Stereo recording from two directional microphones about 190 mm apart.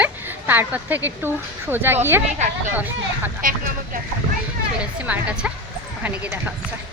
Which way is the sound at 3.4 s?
45° right (ahead or behind).